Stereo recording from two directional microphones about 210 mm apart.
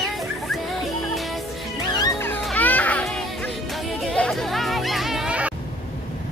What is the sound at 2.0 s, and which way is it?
Music, 10° left (ahead or behind).